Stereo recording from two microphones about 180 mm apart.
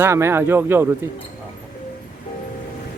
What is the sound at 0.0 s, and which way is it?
Speech, 15° right (ahead or behind).